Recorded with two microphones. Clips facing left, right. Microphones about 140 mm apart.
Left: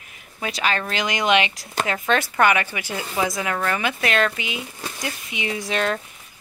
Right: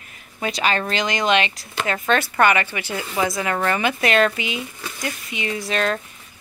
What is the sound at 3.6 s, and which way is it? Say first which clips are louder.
Speech: right 4 dB; centre (ahead or behind).